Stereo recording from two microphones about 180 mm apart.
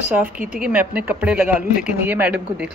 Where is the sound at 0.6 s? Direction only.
10° right (ahead or behind).